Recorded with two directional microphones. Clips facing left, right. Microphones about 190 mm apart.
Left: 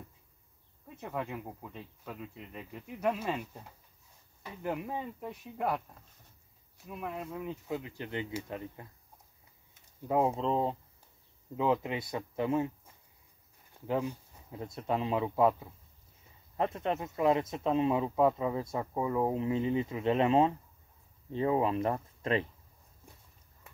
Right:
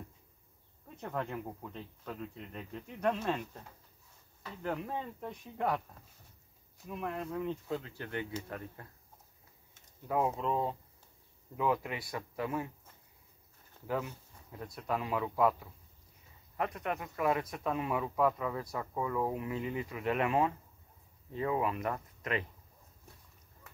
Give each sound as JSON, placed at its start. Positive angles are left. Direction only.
{"t": 0.8, "sound": "speech", "side_deg": 5}
{"t": 6.9, "sound": "speech", "side_deg": 0}
{"t": 7.7, "sound": "speech", "side_deg": 15}
{"t": 10.0, "sound": "speech", "side_deg": 25}
{"t": 13.8, "sound": "speech", "side_deg": 15}